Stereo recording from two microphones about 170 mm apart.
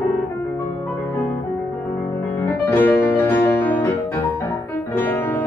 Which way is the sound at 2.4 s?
15° left (ahead or behind).